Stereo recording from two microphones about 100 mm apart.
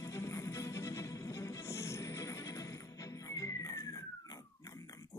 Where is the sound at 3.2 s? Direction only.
35° left (ahead or behind).